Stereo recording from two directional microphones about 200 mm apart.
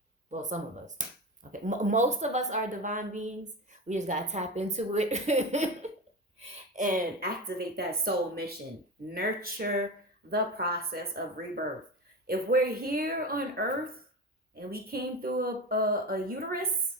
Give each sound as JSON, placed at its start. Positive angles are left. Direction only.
{"t": 0.3, "sound": "a woman's voice", "side_deg": -35}
{"t": 7.8, "sound": "speech", "side_deg": -50}
{"t": 12.2, "sound": "speech", "side_deg": -50}